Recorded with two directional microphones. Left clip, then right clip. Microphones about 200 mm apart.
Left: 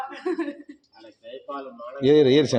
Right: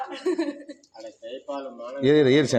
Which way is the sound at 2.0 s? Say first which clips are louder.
Left 2 dB; centre (ahead or behind).